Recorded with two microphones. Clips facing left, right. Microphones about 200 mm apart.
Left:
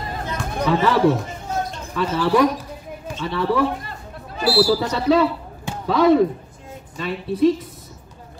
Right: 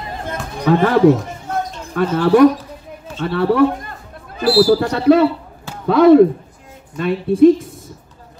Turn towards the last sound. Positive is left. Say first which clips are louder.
# right 7 dB
turn(degrees=-50)  # may be behind; listen again after turning